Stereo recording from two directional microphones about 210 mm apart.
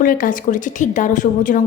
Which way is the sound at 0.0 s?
40° left (ahead or behind).